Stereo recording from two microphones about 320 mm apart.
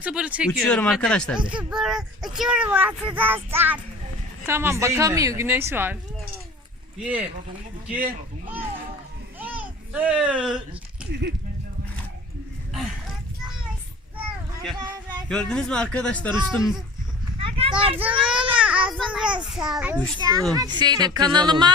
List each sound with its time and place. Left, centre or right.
0.0 s a woman's voice: centre
7.0 s speech: centre
9.4 s a sound: centre
11.1 s speech: right
15.3 s speech: centre
17.4 s a sound: centre
18.0 s a child's voice: centre